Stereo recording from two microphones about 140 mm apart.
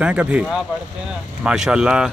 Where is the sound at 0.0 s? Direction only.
10° right (ahead or behind).